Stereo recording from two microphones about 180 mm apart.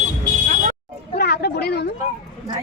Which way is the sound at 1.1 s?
65° left (ahead or behind).